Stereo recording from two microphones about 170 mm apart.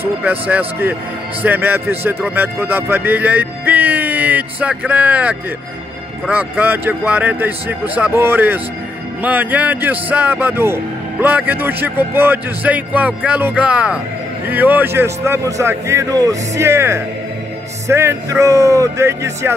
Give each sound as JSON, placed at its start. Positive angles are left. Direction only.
{"t": 0.0, "sound": "speech", "side_deg": -10}